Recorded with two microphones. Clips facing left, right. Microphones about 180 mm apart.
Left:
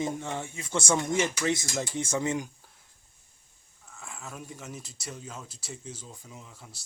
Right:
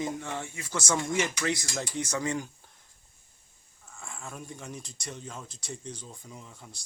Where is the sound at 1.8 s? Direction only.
25° left (ahead or behind).